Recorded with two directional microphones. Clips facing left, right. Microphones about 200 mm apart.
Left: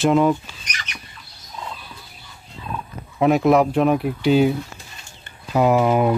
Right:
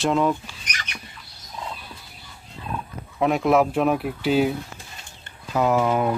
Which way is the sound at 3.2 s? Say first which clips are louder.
Left 3 dB; 5° left (ahead or behind).